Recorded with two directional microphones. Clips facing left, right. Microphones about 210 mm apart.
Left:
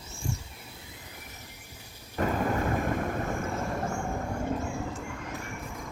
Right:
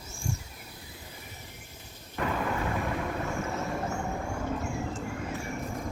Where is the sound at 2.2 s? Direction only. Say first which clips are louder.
Left 3 dB; 45° left (ahead or behind).